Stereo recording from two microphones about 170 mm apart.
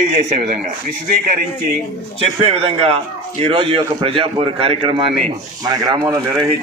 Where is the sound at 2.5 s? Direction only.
35° right (ahead or behind).